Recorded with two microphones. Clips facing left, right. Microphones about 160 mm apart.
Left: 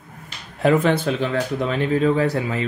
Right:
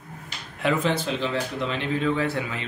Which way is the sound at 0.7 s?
55° left (ahead or behind).